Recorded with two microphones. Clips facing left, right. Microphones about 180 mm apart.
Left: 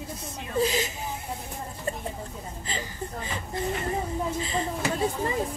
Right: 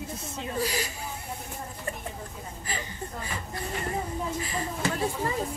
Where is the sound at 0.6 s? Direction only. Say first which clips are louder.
Left 6 dB; 20° left (ahead or behind).